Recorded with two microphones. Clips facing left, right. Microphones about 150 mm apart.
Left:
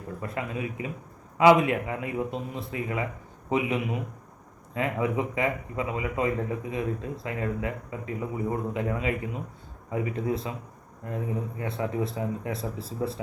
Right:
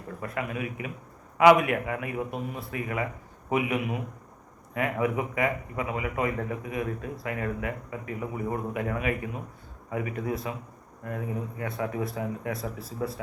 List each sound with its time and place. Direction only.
0.2 s speech: 25° left (ahead or behind)